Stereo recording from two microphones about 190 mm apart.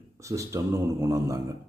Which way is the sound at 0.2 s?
15° right (ahead or behind).